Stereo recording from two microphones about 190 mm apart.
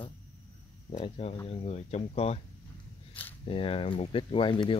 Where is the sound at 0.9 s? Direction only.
30° left (ahead or behind).